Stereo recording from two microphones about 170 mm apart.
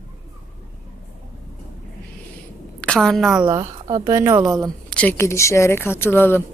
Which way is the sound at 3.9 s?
20° right (ahead or behind).